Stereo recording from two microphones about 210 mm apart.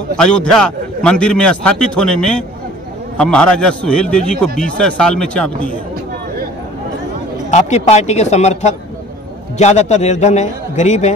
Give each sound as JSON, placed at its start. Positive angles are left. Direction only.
{"t": 0.2, "sound": "a man's voice", "side_deg": 5}
{"t": 7.5, "sound": "a man's voice", "side_deg": 30}